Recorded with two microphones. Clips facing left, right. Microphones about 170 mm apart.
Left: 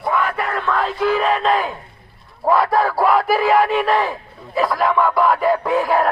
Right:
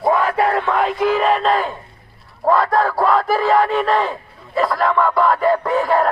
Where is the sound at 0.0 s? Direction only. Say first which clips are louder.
Right 5 dB; 30° right (ahead or behind).